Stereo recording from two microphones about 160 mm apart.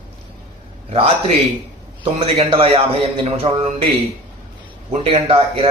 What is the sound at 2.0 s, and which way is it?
A man's voice, 35° right (ahead or behind).